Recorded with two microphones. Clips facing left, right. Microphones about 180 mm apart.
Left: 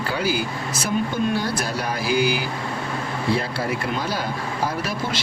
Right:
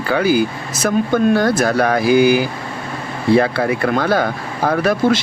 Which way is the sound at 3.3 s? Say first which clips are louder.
Right 12 dB; 70° right (ahead or behind).